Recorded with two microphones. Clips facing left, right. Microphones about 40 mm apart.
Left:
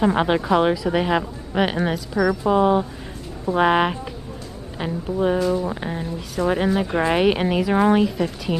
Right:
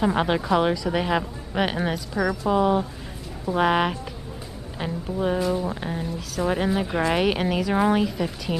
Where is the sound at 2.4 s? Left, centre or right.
Centre.